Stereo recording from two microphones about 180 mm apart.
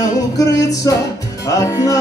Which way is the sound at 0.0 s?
20° left (ahead or behind).